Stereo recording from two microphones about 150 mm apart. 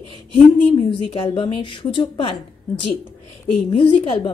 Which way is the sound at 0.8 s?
35° left (ahead or behind).